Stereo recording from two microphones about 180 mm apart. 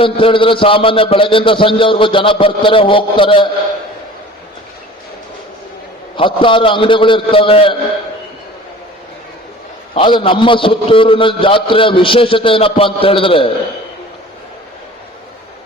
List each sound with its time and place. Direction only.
0.0 s a man's voice: 30° left (ahead or behind)
6.1 s a man's voice: 30° left (ahead or behind)
9.9 s a man's voice: 25° left (ahead or behind)